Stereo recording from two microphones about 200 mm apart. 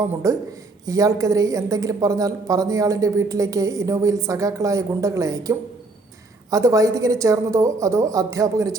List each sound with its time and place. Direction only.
0.2 s speech: 15° right (ahead or behind)